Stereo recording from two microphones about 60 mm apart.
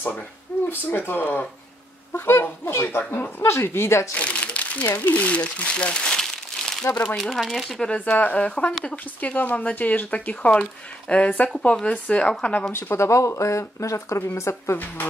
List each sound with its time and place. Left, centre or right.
0.7 s speech: left
4.1 s speech: left; by 7.8 s centre
7.8 s speech: left
12.7 s speech: left